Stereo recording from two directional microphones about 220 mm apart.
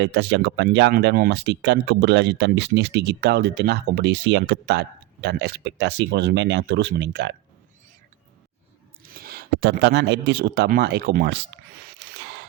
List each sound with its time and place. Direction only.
0.0 s speech: 50° right (ahead or behind)
9.0 s speech: 40° right (ahead or behind)
11.9 s a sound: 45° right (ahead or behind)